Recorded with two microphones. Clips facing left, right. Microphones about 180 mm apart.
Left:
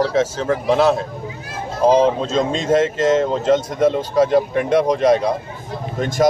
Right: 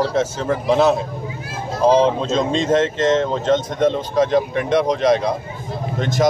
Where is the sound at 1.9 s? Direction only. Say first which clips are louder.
Left 1 dB; 45° left (ahead or behind).